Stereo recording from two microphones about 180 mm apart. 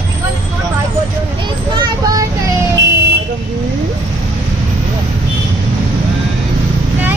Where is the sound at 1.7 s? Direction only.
20° right (ahead or behind).